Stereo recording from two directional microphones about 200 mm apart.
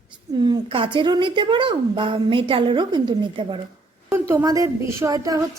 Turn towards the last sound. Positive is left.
turn(degrees=-15)  # may be behind; listen again after turning